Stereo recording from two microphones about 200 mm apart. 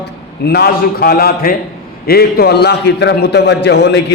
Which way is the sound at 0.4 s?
55° left (ahead or behind).